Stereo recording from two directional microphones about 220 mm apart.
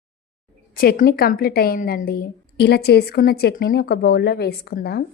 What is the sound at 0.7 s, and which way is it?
Speech, 45° left (ahead or behind).